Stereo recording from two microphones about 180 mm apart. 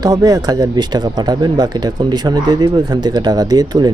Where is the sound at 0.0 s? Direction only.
20° right (ahead or behind).